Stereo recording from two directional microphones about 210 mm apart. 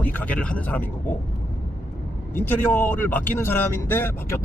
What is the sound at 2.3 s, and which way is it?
Speech, 10° left (ahead or behind).